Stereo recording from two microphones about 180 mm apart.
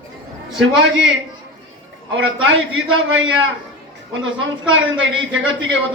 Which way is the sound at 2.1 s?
90° right.